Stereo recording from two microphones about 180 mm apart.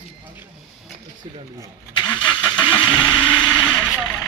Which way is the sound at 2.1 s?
25° left (ahead or behind).